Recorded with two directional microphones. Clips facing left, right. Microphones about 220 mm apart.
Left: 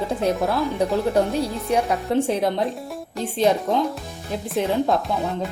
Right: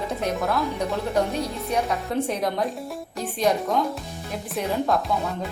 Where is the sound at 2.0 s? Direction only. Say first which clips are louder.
Left 4 dB; 30° left (ahead or behind).